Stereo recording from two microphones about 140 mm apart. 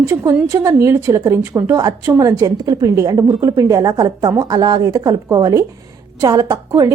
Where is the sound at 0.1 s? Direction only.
20° right (ahead or behind).